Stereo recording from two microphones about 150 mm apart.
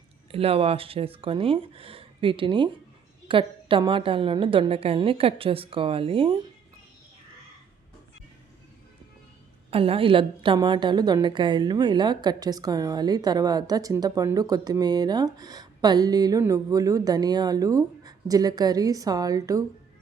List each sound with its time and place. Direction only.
0.3 s a woman's voice: 40° right (ahead or behind)
9.6 s a woman's voice: 40° right (ahead or behind); by 19.6 s 25° right (ahead or behind)